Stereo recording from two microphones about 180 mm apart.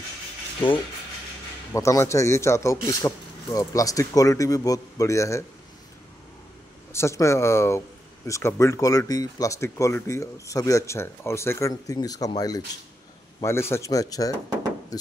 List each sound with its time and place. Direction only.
1.7 s speech: 15° left (ahead or behind)
6.9 s speech: 15° left (ahead or behind)